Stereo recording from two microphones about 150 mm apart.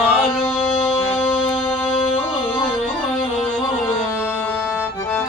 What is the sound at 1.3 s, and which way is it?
Music, 40° left (ahead or behind).